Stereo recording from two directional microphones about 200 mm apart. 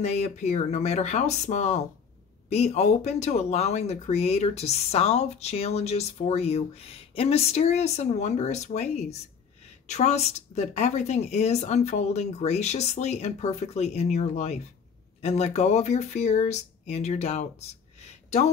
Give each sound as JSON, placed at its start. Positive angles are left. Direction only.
{"t": 0.0, "sound": "speech", "side_deg": 35}